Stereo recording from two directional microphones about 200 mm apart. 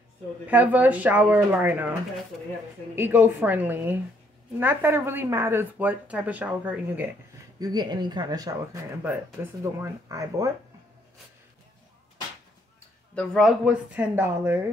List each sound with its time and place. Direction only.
0.5 s speech: 10° right (ahead or behind)
3.0 s speech: 10° right (ahead or behind)
7.5 s speech: 20° right (ahead or behind)
13.1 s a woman's voice: 5° left (ahead or behind); by 14.6 s 10° right (ahead or behind)